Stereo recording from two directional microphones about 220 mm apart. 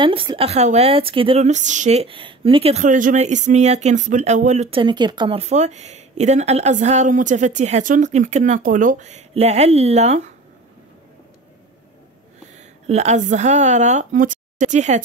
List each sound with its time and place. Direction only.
0.0 s a woman's voice: 20° right (ahead or behind)
12.5 s a woman's voice: 30° right (ahead or behind)